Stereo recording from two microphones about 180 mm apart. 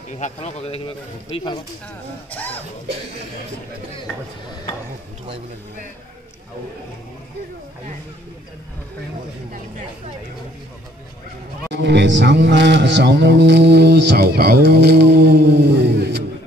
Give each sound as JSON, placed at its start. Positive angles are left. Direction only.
{"t": 0.2, "sound": "speech", "side_deg": 35}
{"t": 2.3, "sound": "speech", "side_deg": 10}
{"t": 11.7, "sound": "speech", "side_deg": -75}